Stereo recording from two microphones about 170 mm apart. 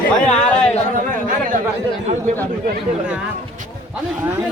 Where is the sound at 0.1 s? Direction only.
5° left (ahead or behind).